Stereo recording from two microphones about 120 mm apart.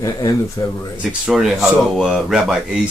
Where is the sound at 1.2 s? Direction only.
Centre (ahead or behind).